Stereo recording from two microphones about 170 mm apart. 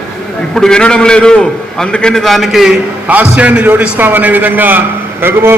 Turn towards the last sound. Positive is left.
turn(degrees=-15)  # may be behind; listen again after turning